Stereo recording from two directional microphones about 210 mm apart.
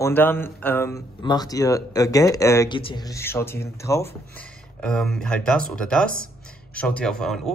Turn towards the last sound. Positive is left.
turn(degrees=0)  # may be behind; listen again after turning